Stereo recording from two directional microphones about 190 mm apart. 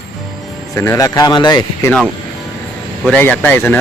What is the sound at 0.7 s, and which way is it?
Speech, 15° left (ahead or behind).